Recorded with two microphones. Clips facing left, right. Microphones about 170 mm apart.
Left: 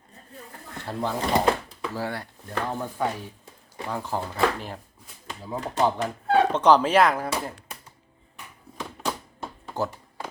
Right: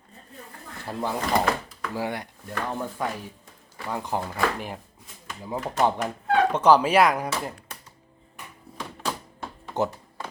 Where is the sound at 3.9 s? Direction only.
15° right (ahead or behind).